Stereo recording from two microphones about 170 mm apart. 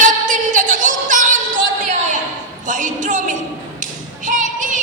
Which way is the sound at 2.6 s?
50° right (ahead or behind).